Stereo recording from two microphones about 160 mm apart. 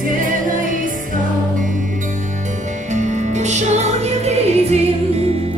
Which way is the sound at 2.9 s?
50° right (ahead or behind).